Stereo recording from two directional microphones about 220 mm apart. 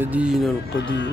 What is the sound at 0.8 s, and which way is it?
Speech, 55° left (ahead or behind).